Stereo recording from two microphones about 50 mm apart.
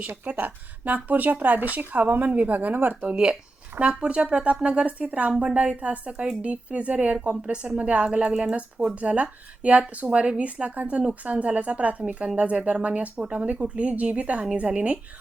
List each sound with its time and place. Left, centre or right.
0.3 s speech: right
3.1 s speech: centre